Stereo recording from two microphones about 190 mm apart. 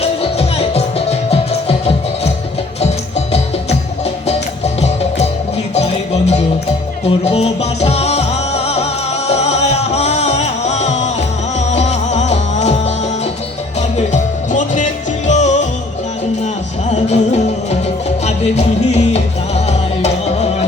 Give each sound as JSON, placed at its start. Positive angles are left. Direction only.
{"t": 0.0, "sound": "music", "side_deg": 30}
{"t": 13.9, "sound": "music", "side_deg": 40}
{"t": 16.9, "sound": "music", "side_deg": 35}
{"t": 18.9, "sound": "music", "side_deg": 35}